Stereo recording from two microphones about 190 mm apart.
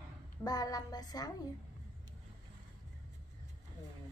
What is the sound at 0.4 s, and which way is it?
Speech, 20° left (ahead or behind).